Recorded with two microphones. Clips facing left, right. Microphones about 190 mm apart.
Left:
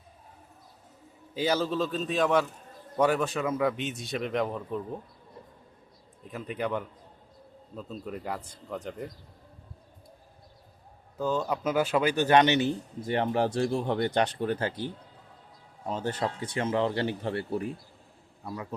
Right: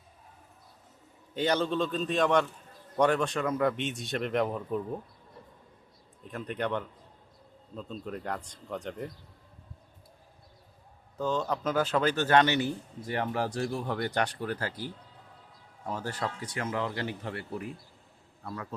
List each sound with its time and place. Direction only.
1.3 s a man's voice: 5° left (ahead or behind)
6.2 s a man's voice: 5° left (ahead or behind)
11.2 s speech: 10° left (ahead or behind); by 17.7 s 30° left (ahead or behind)
18.4 s a man's voice: 15° left (ahead or behind)